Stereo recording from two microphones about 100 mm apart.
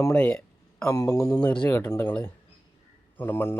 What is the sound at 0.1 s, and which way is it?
Speech, 15° left (ahead or behind).